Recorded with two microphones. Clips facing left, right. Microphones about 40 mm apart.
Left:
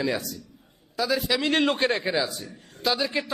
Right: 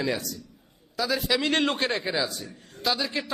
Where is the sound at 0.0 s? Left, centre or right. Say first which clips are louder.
Left 1 dB; centre.